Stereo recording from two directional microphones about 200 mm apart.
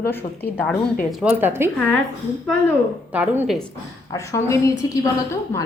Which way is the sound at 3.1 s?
5° right (ahead or behind).